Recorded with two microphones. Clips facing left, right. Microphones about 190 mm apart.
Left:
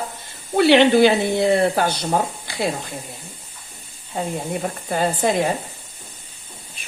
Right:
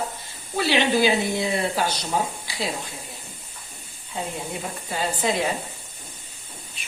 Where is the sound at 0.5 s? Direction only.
60° left (ahead or behind).